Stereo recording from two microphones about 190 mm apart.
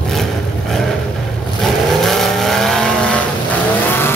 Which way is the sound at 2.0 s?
Centre (ahead or behind).